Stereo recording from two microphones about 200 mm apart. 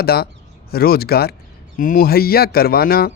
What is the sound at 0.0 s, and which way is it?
Speech, 50° left (ahead or behind).